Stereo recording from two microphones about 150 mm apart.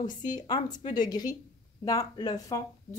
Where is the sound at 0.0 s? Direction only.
30° left (ahead or behind).